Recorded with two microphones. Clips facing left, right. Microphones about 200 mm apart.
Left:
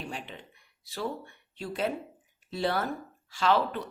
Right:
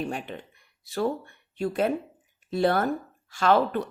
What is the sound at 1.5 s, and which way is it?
Speech, 50° right (ahead or behind).